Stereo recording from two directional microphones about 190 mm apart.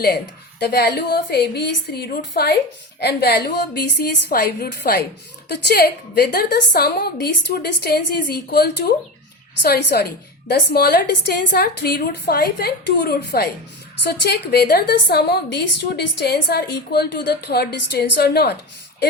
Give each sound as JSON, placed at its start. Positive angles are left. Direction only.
{"t": 0.6, "sound": "a woman's voice", "side_deg": 60}